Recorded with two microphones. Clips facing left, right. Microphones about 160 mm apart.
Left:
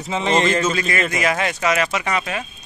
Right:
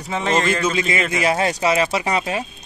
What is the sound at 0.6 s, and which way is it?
Speech, 20° right (ahead or behind).